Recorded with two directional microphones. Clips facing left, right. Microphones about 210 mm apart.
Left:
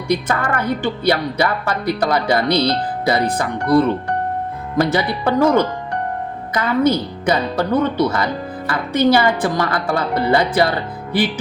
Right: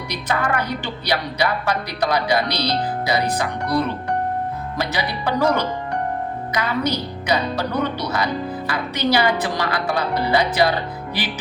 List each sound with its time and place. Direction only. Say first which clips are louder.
0.1 s speech: left 4 dB; 50° left (ahead or behind)